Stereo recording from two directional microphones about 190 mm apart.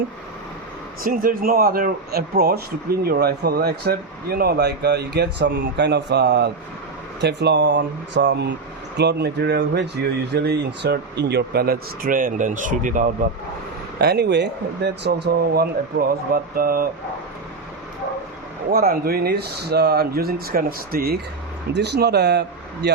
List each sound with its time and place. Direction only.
1.0 s speech: 50° right (ahead or behind)
14.0 s speech: 60° right (ahead or behind)
18.7 s speech: 50° right (ahead or behind)